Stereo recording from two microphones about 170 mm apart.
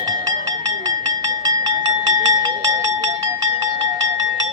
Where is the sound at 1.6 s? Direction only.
25° right (ahead or behind).